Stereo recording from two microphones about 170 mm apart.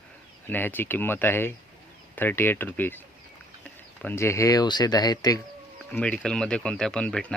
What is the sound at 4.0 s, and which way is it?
Speech, 15° left (ahead or behind).